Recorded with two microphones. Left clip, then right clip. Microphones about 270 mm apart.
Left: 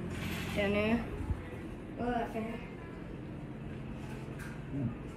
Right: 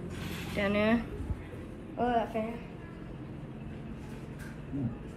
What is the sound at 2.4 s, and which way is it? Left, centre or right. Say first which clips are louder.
Speech: right 5 dB; right.